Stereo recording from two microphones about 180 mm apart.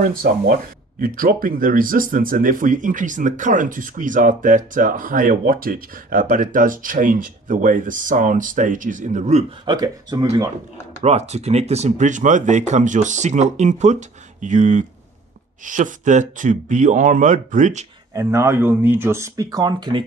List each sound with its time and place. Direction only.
0.0 s speech: 50° right (ahead or behind)
9.7 s speech: 25° right (ahead or behind)
11.0 s speech: 35° right (ahead or behind)
18.1 s speech: 15° right (ahead or behind)